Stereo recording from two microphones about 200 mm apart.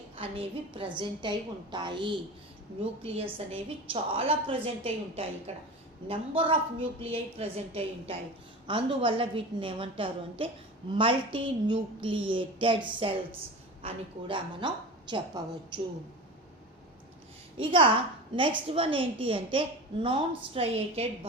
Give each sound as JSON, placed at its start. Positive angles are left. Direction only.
{"t": 0.2, "sound": "a woman's voice", "side_deg": -30}
{"t": 17.6, "sound": "a woman's voice", "side_deg": -25}